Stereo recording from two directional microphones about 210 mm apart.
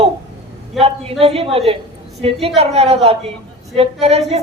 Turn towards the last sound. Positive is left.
turn(degrees=-30)  # may be behind; listen again after turning